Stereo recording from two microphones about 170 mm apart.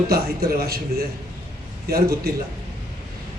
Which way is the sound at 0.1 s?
65° right (ahead or behind).